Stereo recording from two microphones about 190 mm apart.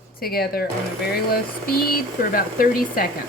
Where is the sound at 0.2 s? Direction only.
55° left (ahead or behind).